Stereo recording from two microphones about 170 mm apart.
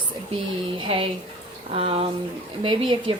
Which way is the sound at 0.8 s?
35° right (ahead or behind).